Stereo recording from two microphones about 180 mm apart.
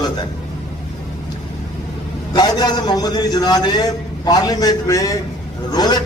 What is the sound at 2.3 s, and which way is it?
A man's voice, 25° left (ahead or behind).